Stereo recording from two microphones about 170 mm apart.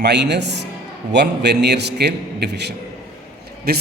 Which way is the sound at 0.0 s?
85° right.